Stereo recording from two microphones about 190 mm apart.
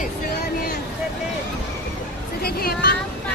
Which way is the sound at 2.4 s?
55° left (ahead or behind).